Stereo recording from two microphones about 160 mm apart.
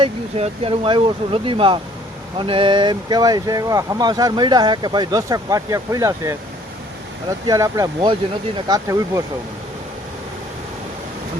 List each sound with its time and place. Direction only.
0.0 s speech: 40° right (ahead or behind); by 9.2 s 20° right (ahead or behind)